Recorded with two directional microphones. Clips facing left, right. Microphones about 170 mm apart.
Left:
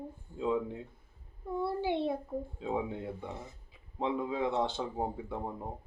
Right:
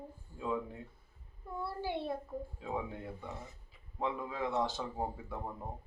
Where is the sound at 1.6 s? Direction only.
25° left (ahead or behind).